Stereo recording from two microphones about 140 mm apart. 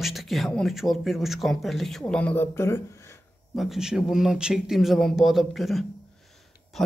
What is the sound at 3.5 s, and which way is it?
Speech, centre (ahead or behind).